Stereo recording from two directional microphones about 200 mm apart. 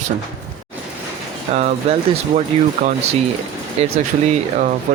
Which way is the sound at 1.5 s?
35° right (ahead or behind).